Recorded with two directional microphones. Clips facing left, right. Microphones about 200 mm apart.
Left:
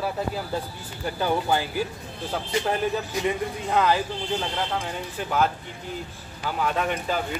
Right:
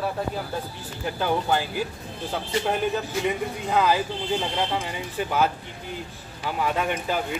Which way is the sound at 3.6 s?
Centre (ahead or behind).